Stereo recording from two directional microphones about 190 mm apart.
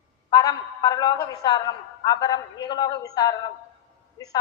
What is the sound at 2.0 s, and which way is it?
A woman's voice, 20° left (ahead or behind).